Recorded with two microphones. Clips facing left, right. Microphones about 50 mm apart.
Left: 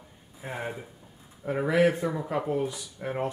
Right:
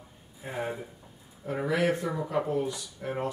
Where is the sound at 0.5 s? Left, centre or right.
Centre.